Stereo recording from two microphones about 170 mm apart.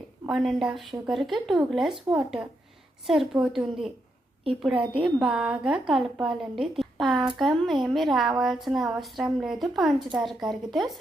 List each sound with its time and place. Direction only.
0.3 s speech: centre (ahead or behind)
4.7 s a woman's voice: 30° right (ahead or behind)
5.2 s speech: centre (ahead or behind)